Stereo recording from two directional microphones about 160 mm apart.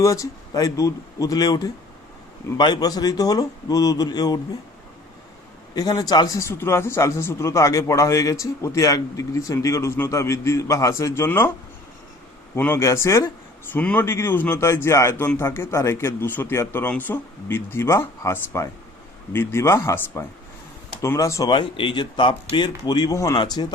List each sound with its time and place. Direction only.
0.0 s speech: 20° left (ahead or behind)
5.7 s speech: 25° left (ahead or behind)
12.5 s speech: 15° left (ahead or behind)
21.5 s speech: 30° left (ahead or behind)